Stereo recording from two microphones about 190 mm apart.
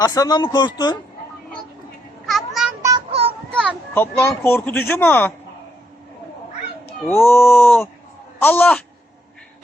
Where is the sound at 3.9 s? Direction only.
10° left (ahead or behind).